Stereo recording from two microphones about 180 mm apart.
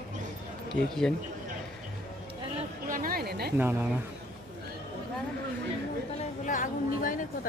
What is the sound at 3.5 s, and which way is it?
Speech, 10° right (ahead or behind).